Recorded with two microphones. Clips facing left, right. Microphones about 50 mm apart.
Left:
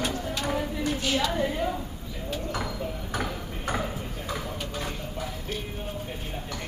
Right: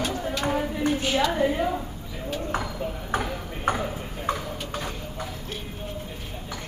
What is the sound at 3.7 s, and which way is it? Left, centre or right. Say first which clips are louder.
Ping: right 4 dB; right.